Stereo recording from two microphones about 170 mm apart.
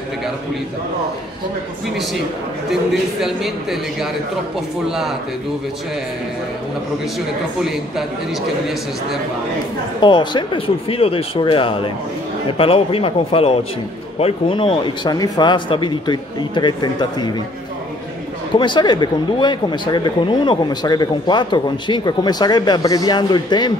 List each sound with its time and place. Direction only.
2.7 s a man's voice: centre (ahead or behind)
7.6 s a man's voice: centre (ahead or behind)
10.0 s speech: 25° left (ahead or behind)
18.5 s speech: 25° left (ahead or behind)